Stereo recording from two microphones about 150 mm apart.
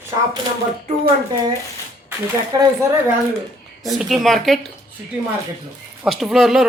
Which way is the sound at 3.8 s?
Centre (ahead or behind).